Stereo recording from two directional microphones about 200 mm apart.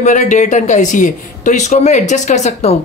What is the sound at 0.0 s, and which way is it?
Speech, 40° left (ahead or behind).